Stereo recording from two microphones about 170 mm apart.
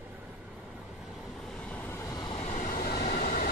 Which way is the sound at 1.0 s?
Centre (ahead or behind).